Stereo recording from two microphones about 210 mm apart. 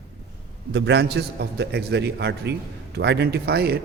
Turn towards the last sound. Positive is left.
turn(degrees=-50)  # may be behind; listen again after turning